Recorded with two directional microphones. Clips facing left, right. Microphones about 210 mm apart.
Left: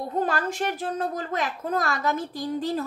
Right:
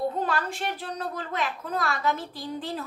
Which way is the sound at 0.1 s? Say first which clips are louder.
Left 3 dB; 45° left (ahead or behind).